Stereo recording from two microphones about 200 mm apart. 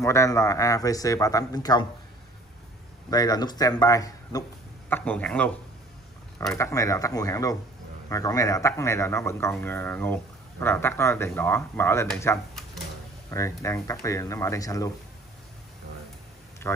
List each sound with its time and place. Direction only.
0.0 s speech: 15° left (ahead or behind)
3.1 s speech: 20° left (ahead or behind)
6.5 s speech: 15° left (ahead or behind)
13.3 s speech: 15° left (ahead or behind)
16.6 s speech: 10° left (ahead or behind)